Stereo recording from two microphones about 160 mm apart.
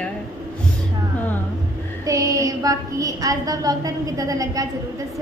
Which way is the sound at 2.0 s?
20° right (ahead or behind).